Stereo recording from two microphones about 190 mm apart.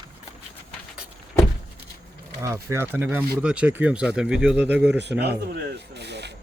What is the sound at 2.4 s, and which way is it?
A man's voice, 15° right (ahead or behind).